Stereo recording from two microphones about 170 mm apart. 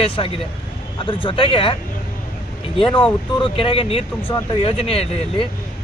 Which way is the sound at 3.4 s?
30° left (ahead or behind).